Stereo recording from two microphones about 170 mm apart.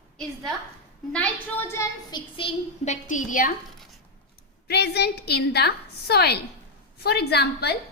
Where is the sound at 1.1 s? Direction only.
10° left (ahead or behind).